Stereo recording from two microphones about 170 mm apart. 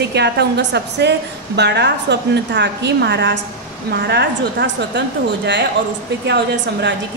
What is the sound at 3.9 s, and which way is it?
A woman's voice, 80° right.